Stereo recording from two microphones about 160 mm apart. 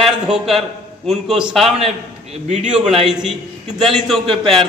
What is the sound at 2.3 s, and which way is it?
Speech, 45° right (ahead or behind).